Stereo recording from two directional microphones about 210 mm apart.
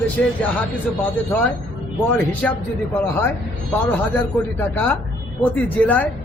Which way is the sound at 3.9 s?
10° left (ahead or behind).